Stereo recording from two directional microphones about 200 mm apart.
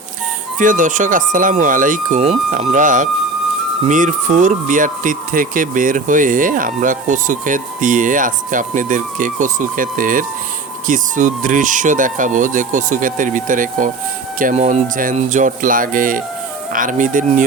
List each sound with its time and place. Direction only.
0.6 s speech: 40° right (ahead or behind)